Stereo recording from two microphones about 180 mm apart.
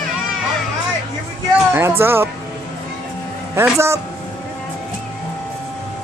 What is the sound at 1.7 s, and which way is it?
Speech, 15° right (ahead or behind).